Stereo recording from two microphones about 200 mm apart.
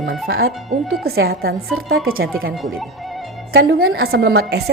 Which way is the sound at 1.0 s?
50° right (ahead or behind).